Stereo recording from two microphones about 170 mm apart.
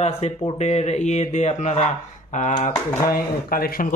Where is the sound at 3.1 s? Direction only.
60° left (ahead or behind).